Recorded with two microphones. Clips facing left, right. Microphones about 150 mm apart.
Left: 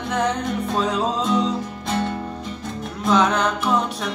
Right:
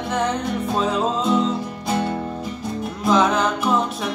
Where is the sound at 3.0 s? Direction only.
Centre (ahead or behind).